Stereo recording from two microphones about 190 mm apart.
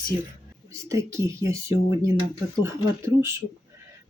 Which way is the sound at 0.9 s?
15° right (ahead or behind).